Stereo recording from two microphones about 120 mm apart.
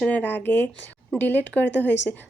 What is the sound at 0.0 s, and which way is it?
Speech, 15° left (ahead or behind).